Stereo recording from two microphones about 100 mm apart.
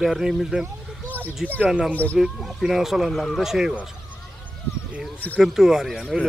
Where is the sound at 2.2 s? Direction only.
Centre (ahead or behind).